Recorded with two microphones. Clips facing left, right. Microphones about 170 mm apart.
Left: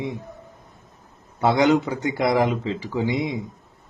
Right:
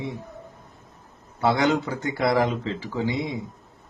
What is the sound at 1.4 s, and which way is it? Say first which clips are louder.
Speech: left 3 dB; 20° left (ahead or behind).